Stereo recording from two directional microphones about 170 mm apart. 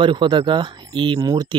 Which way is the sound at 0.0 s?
30° right (ahead or behind).